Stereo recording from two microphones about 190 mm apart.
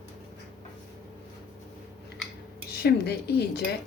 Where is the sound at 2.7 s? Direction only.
55° left (ahead or behind).